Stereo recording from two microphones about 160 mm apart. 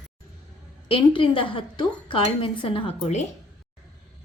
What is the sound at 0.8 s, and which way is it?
A woman's voice, 35° left (ahead or behind).